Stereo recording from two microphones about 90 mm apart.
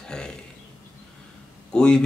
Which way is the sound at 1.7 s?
10° left (ahead or behind).